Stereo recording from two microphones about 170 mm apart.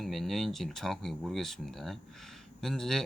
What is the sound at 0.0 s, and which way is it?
Speech, centre (ahead or behind).